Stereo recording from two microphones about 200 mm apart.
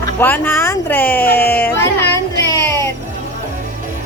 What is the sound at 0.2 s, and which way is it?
Speech, 10° left (ahead or behind).